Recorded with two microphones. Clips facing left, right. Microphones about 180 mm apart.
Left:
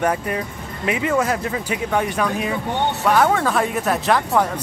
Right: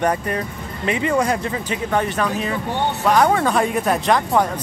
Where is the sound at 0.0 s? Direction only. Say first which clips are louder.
Right 1 dB; 5° left (ahead or behind).